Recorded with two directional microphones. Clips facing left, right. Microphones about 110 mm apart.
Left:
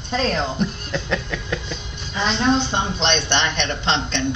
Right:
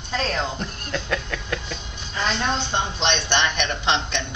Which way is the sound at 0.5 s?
5° left (ahead or behind).